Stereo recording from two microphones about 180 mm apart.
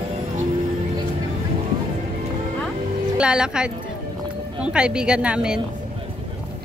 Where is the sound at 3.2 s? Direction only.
5° right (ahead or behind).